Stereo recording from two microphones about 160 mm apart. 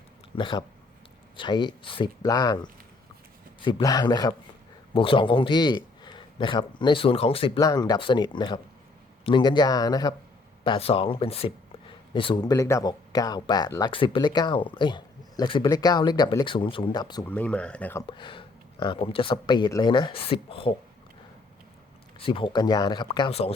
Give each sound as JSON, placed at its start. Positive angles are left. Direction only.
{"t": 0.3, "sound": "speech", "side_deg": 30}
{"t": 3.6, "sound": "speech", "side_deg": 25}
{"t": 10.6, "sound": "speech", "side_deg": 35}
{"t": 17.2, "sound": "speech", "side_deg": 10}
{"t": 18.0, "sound": "speech", "side_deg": 30}
{"t": 22.2, "sound": "speech", "side_deg": 35}